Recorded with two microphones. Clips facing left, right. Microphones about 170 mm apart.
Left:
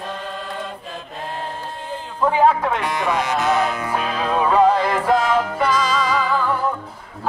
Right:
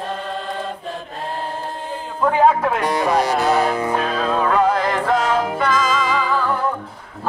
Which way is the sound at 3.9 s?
10° left (ahead or behind).